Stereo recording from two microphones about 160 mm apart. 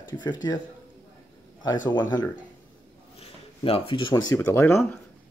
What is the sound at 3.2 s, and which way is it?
Speech, 35° left (ahead or behind).